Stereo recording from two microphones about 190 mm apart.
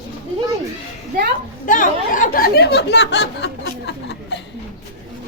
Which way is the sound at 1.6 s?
45° left (ahead or behind).